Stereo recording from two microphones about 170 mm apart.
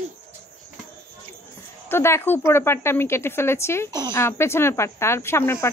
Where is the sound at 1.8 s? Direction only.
15° left (ahead or behind).